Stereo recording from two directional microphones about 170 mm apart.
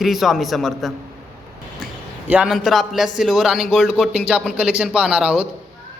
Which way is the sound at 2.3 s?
5° right (ahead or behind).